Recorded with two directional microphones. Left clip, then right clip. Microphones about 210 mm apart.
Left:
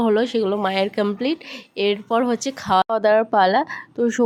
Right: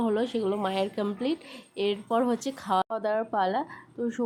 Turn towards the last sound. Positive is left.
turn(degrees=30)  # may be behind; listen again after turning